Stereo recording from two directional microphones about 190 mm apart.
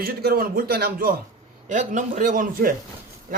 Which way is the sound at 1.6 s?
40° right (ahead or behind).